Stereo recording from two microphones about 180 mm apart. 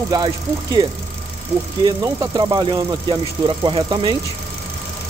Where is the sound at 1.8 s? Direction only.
20° right (ahead or behind).